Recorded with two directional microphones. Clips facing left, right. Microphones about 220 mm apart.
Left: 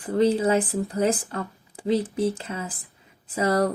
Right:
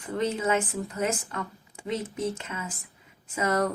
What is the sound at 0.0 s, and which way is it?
Speech, 35° left (ahead or behind).